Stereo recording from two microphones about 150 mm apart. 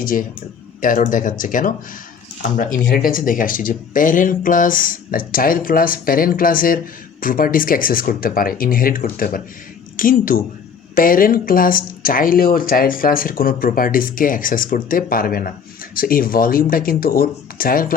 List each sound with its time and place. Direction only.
0.0 s speech: 65° left (ahead or behind)